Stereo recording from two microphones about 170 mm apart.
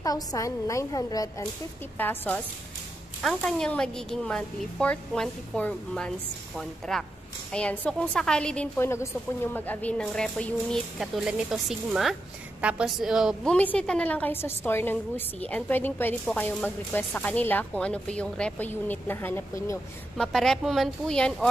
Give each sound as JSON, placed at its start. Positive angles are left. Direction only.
{"t": 0.0, "sound": "a woman's voice", "side_deg": 20}
{"t": 2.0, "sound": "a woman's voice", "side_deg": 10}
{"t": 20.2, "sound": "a woman's voice", "side_deg": 0}